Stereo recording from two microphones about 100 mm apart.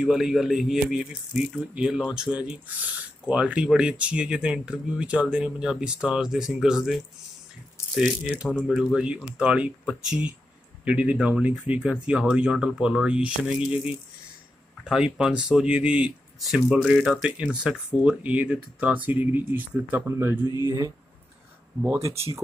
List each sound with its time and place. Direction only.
0.0 s speech: 5° right (ahead or behind)
14.9 s speech: 10° right (ahead or behind); by 22.1 s 25° right (ahead or behind)